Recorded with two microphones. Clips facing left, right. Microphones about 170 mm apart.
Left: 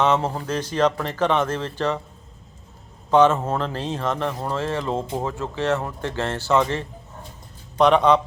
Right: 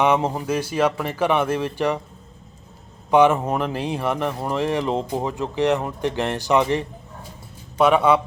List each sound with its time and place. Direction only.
0.0 s speech: 10° right (ahead or behind)
3.1 s speech: 15° right (ahead or behind)